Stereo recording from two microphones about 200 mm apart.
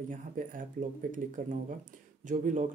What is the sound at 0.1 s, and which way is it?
Speech, 40° right (ahead or behind).